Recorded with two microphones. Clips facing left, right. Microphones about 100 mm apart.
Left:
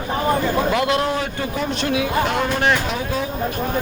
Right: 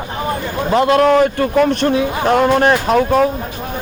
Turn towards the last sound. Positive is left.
turn(degrees=-55)  # may be behind; listen again after turning